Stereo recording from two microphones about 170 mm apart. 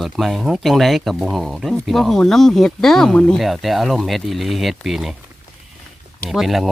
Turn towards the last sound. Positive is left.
turn(degrees=0)  # may be behind; listen again after turning